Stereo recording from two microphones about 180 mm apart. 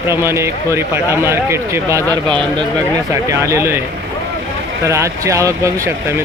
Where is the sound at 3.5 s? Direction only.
15° right (ahead or behind).